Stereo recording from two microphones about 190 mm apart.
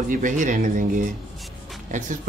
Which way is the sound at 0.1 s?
45° right (ahead or behind).